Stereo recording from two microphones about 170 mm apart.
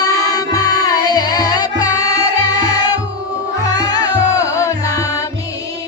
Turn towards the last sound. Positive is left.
turn(degrees=20)  # may be behind; listen again after turning